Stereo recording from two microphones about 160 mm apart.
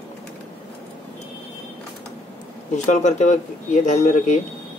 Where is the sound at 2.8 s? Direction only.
50° left (ahead or behind).